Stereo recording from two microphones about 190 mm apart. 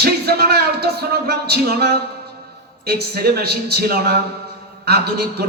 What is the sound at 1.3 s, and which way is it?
A man's voice, 55° right (ahead or behind).